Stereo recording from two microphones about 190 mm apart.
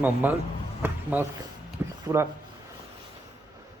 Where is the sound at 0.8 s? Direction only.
10° right (ahead or behind).